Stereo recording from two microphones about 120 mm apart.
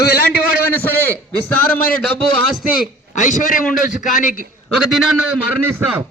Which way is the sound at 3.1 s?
90° left.